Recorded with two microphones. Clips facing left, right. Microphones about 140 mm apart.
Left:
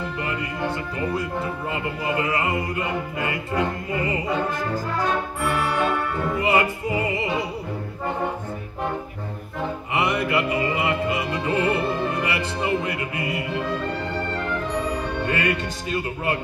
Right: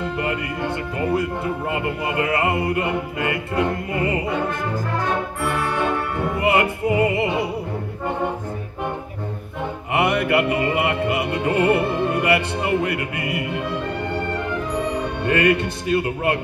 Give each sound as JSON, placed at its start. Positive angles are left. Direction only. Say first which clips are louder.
{"t": 0.2, "sound": "music", "louder": "right 1 dB", "side_deg": -65}
{"t": 6.4, "sound": "music", "louder": "right 3 dB", "side_deg": -65}
{"t": 9.9, "sound": "music", "louder": "right 4 dB", "side_deg": -65}
{"t": 15.2, "sound": "music", "louder": "right 8 dB", "side_deg": -65}